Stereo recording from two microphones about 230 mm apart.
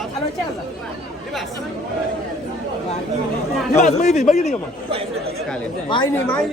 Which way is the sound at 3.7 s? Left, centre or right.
Left.